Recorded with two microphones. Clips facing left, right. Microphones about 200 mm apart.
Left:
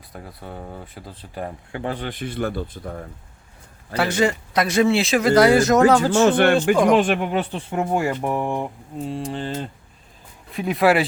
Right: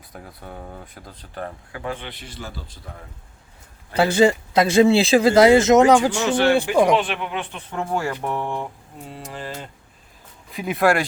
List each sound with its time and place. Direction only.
0.1 s speech: centre (ahead or behind)
1.7 s speech: 35° left (ahead or behind)
3.9 s speech: 30° right (ahead or behind)
6.3 s speech: 55° left (ahead or behind); by 7.6 s 40° left (ahead or behind)
7.7 s mantra: 20° left (ahead or behind)
10.5 s speech: centre (ahead or behind)